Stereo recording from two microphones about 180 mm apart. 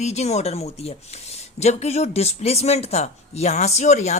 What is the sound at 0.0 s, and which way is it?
Speech, 35° left (ahead or behind).